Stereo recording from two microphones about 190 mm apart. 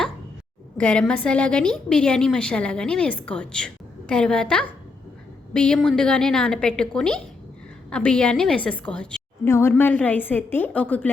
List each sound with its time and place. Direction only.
0.8 s a woman's voice: 5° left (ahead or behind)